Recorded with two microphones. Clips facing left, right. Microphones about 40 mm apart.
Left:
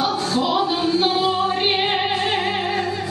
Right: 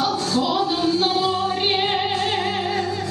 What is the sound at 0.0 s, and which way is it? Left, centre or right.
Music, centre.